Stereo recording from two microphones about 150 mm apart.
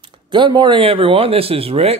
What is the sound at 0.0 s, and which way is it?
Speech, 30° right (ahead or behind).